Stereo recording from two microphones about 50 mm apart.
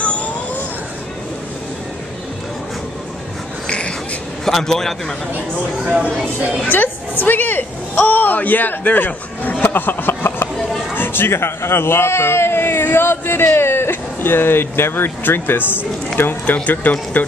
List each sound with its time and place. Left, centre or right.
0.0 s vehicle: left
3.6 s a sound: left
4.5 s a man's voice: centre
6.7 s a woman's voice: left
16.6 s speech: left